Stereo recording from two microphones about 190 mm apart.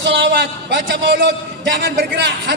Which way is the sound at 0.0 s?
65° right (ahead or behind).